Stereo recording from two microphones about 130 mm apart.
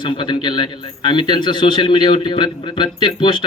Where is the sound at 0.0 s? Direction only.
40° left (ahead or behind).